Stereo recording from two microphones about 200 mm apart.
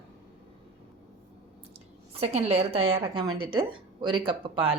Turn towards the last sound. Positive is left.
turn(degrees=-25)  # may be behind; listen again after turning